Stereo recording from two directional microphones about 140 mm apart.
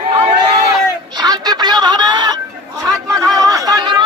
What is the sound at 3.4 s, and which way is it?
Chatter, 25° right (ahead or behind).